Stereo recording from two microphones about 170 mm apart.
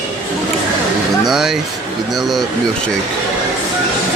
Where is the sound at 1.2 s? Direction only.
Centre (ahead or behind).